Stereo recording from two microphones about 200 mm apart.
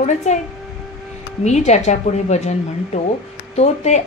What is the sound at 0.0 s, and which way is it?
Speech, 35° left (ahead or behind).